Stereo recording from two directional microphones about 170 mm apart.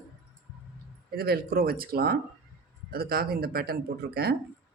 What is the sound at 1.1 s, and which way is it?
Speech, 60° right (ahead or behind).